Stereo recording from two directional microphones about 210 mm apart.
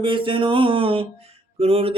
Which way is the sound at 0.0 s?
25° right (ahead or behind).